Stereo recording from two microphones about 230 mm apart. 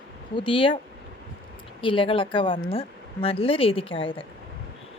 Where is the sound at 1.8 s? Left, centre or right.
Left.